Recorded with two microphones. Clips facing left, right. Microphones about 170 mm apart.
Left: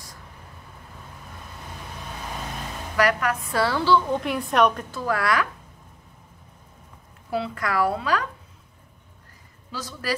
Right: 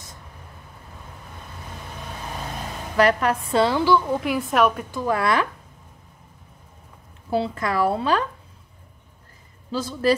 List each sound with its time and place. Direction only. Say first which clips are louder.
3.0 s a woman's voice: right 4 dB; 30° right (ahead or behind); by 4.2 s 15° right (ahead or behind)
4.2 s a woman's voice: right 1 dB; centre (ahead or behind)
4.9 s a woman's voice: right 2 dB; 20° right (ahead or behind)
7.2 s a woman's voice: right 4 dB; 30° right (ahead or behind)
9.7 s a woman's voice: right 9 dB; 30° right (ahead or behind)